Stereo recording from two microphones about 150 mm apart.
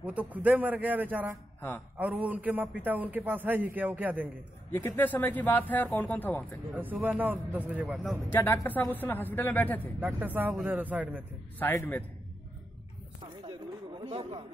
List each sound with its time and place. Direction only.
0.0 s a man's voice: 10° right (ahead or behind)
4.6 s speech: 15° left (ahead or behind)
6.7 s a man's voice: 10° right (ahead or behind)
8.3 s speech: 15° left (ahead or behind)
9.9 s a man's voice: 10° right (ahead or behind)
11.6 s speech: 15° left (ahead or behind)
13.5 s chatter: 35° right (ahead or behind)